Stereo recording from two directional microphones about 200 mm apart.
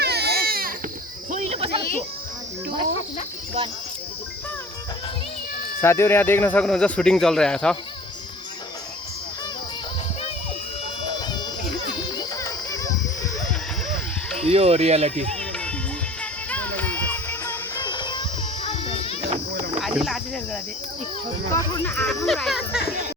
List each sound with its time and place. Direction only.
0.0 s baby cry: 55° right (ahead or behind)
1.3 s cricket: 35° right (ahead or behind)
5.8 s speech: 15° left (ahead or behind)
12.4 s a sound: 15° left (ahead or behind)
14.4 s speech: 30° right (ahead or behind)
15.3 s music: 5° left (ahead or behind); by 19.1 s 30° left (ahead or behind)
19.3 s a sound: 40° right (ahead or behind)
19.8 s cricket: centre (ahead or behind)
21.5 s speech: 10° left (ahead or behind)